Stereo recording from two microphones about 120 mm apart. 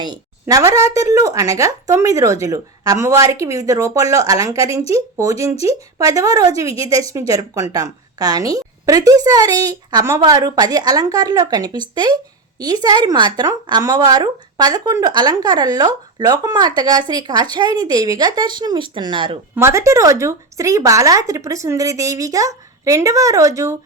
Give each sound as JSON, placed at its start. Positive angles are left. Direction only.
{"t": 0.0, "sound": "a woman's voice", "side_deg": -35}
{"t": 19.5, "sound": "speech", "side_deg": -25}